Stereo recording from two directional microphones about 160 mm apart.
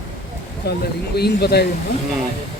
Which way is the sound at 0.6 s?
85° left.